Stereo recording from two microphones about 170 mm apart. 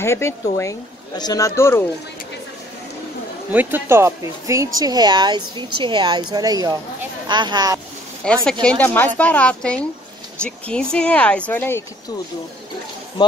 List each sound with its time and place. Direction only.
0.0 s speech: 15° left (ahead or behind)
3.5 s a woman's voice: 15° right (ahead or behind)
8.2 s speech: 5° left (ahead or behind)